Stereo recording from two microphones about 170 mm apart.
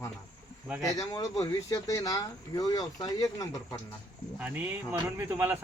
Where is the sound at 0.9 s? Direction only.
20° left (ahead or behind).